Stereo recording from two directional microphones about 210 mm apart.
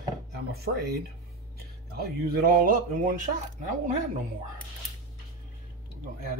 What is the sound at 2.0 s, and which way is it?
Speech, 45° right (ahead or behind).